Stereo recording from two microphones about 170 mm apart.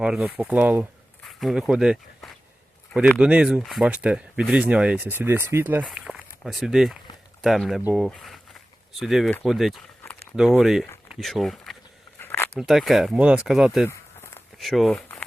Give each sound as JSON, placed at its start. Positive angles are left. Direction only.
{"t": 0.0, "sound": "speech", "side_deg": -5}
{"t": 12.2, "sound": "a sound", "side_deg": 15}
{"t": 12.5, "sound": "speech", "side_deg": 0}
{"t": 13.8, "sound": "walk", "side_deg": 15}
{"t": 14.6, "sound": "speech", "side_deg": 0}